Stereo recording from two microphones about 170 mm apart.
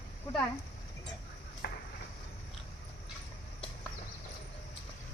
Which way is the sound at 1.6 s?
80° left.